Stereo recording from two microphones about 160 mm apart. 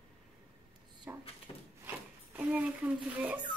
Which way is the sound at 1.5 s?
25° left (ahead or behind).